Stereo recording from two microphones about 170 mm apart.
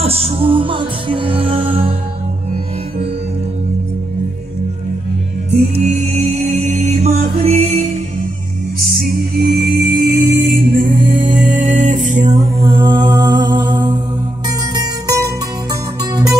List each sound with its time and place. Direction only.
0.0 s music: 35° right (ahead or behind)
5.5 s music: 40° right (ahead or behind)
8.7 s music: 60° right (ahead or behind); by 12.6 s 45° right (ahead or behind)
12.6 s mantra: 30° right (ahead or behind)
13.2 s music: 25° right (ahead or behind)
13.7 s mantra: 25° right (ahead or behind)
14.7 s music: 20° right (ahead or behind)